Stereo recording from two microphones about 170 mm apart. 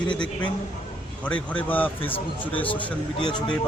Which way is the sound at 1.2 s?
10° left (ahead or behind).